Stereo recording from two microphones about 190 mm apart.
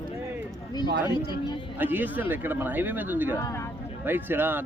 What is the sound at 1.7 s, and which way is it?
Speech, 10° right (ahead or behind).